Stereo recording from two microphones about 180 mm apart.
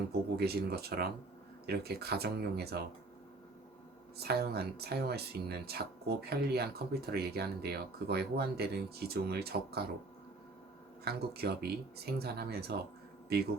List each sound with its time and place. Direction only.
0.1 s speech: 60° right (ahead or behind)
4.2 s speech: 60° right (ahead or behind)
11.0 s speech: 60° right (ahead or behind)